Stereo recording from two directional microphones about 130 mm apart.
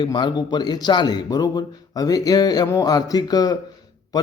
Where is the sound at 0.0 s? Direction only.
35° left (ahead or behind).